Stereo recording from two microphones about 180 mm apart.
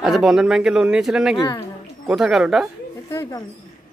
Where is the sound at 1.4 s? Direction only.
20° left (ahead or behind).